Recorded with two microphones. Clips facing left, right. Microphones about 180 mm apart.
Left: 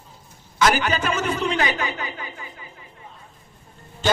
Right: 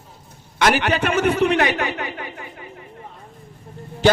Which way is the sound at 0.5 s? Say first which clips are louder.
Right 2 dB; 60° right (ahead or behind).